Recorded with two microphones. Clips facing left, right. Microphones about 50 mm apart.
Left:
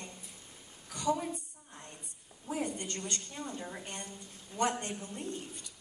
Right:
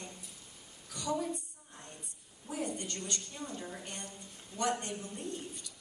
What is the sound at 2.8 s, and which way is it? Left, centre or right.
A woman's voice, left.